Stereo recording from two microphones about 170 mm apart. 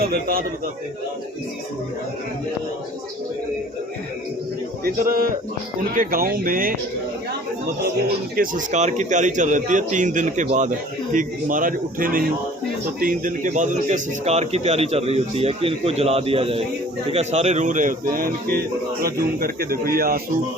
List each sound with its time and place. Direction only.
0.0 s a man's voice: 60° right (ahead or behind)
4.8 s a man's voice: 55° right (ahead or behind)
8.4 s a man's voice: 45° right (ahead or behind)